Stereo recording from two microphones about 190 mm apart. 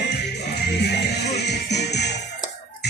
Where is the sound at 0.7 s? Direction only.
60° left (ahead or behind).